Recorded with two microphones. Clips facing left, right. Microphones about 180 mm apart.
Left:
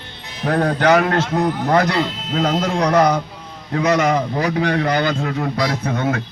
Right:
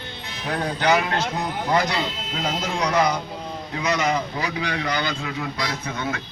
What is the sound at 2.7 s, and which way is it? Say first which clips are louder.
A man's voice: left 5 dB; 55° left (ahead or behind).